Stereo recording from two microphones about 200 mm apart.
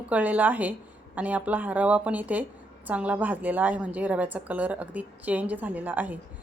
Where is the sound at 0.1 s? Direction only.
10° right (ahead or behind).